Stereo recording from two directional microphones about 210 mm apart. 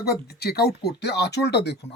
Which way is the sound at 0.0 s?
50° left (ahead or behind).